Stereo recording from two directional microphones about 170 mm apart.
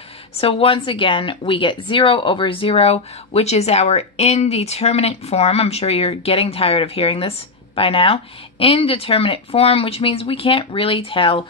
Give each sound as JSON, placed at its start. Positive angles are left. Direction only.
{"t": 0.4, "sound": "speech", "side_deg": 35}